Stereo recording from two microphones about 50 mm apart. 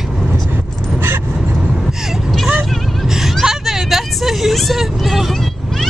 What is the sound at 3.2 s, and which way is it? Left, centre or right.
Vehicle, centre.